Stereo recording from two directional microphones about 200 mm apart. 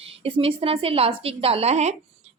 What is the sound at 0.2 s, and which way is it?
A woman's voice, 25° right (ahead or behind).